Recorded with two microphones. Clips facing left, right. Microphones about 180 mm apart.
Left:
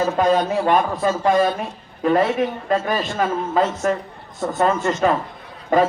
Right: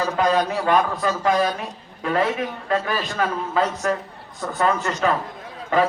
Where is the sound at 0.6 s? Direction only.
35° left (ahead or behind).